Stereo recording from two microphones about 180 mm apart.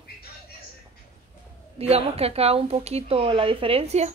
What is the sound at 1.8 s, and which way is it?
Speech, 35° right (ahead or behind).